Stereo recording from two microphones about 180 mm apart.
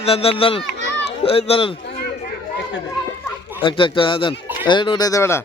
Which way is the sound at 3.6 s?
30° left (ahead or behind).